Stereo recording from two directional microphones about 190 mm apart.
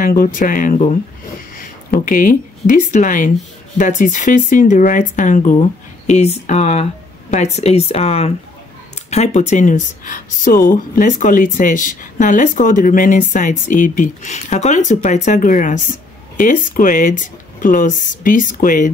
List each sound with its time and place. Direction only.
0.0 s speech: 45° left (ahead or behind)
1.9 s speech: 45° left (ahead or behind)